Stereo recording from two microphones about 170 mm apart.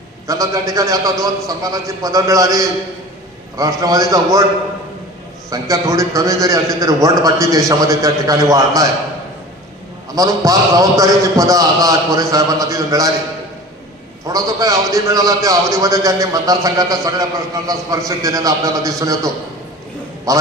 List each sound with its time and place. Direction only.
0.3 s a man's voice: 20° right (ahead or behind)
5.5 s a man's voice: 20° right (ahead or behind)
10.2 s a man's voice: 20° right (ahead or behind)
14.3 s a man's voice: 20° right (ahead or behind)